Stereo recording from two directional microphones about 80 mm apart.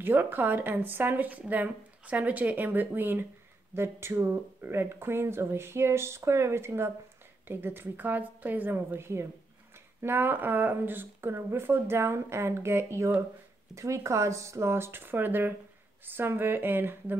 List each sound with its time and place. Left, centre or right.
0.0 s speech: right